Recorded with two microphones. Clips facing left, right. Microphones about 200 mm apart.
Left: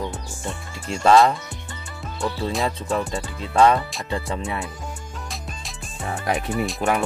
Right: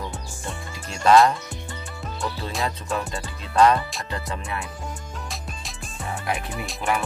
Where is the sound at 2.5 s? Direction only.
Centre (ahead or behind).